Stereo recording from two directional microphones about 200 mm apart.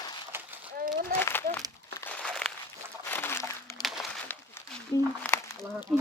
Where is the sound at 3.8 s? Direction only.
Centre (ahead or behind).